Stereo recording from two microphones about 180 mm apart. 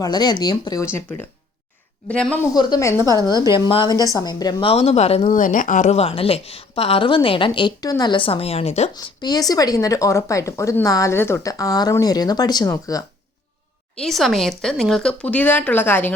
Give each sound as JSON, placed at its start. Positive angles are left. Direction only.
{"t": 0.0, "sound": "speech", "side_deg": 25}
{"t": 2.5, "sound": "speech", "side_deg": 20}
{"t": 4.7, "sound": "speech", "side_deg": 35}
{"t": 9.0, "sound": "speech", "side_deg": 20}
{"t": 14.0, "sound": "speech", "side_deg": 0}